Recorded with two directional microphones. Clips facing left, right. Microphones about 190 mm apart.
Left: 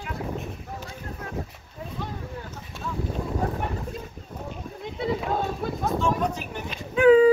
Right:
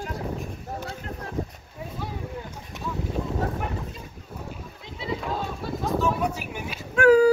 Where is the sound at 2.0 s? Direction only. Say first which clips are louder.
Right 2 dB; 10° right (ahead or behind).